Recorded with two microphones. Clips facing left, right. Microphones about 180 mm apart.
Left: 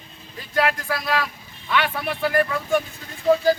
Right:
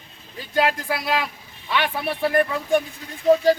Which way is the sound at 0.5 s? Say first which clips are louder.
Right 1 dB; 25° right (ahead or behind).